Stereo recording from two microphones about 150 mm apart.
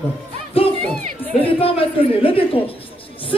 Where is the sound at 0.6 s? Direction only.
40° left (ahead or behind).